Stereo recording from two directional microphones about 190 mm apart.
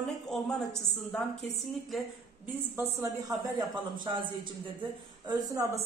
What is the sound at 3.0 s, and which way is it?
Speech, 15° right (ahead or behind).